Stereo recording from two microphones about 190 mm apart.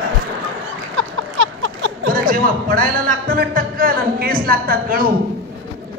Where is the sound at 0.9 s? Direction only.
85° right.